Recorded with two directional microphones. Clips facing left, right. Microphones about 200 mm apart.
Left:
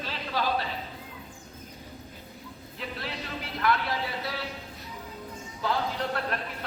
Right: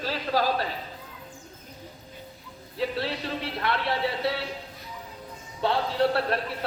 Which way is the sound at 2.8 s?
30° right (ahead or behind).